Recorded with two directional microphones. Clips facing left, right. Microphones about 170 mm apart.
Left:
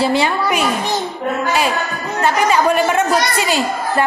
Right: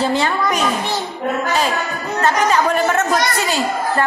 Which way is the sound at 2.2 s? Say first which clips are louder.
Left 1 dB; 10° left (ahead or behind).